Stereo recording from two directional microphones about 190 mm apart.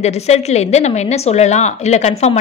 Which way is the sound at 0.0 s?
35° left (ahead or behind).